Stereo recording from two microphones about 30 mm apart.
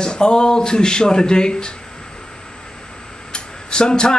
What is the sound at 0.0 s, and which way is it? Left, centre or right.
Speech, left.